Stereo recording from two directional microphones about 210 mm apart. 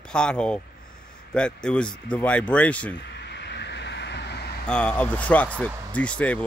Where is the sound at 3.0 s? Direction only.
55° left (ahead or behind).